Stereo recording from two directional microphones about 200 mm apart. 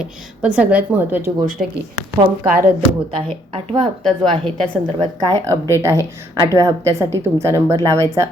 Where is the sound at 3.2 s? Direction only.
25° right (ahead or behind).